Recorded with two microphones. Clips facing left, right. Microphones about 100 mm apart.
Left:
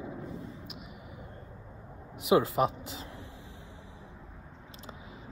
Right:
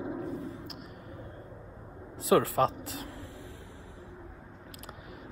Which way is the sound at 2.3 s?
20° left (ahead or behind).